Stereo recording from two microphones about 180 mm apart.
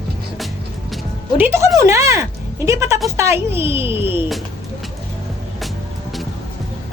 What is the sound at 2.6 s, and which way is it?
Music, 15° right (ahead or behind).